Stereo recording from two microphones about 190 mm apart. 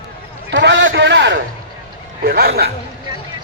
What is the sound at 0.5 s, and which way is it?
Speech, 70° right (ahead or behind).